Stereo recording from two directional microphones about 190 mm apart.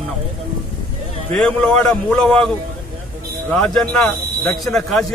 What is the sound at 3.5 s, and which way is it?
Speech, 5° left (ahead or behind).